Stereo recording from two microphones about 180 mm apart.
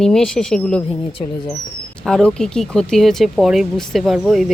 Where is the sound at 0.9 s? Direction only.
30° left (ahead or behind).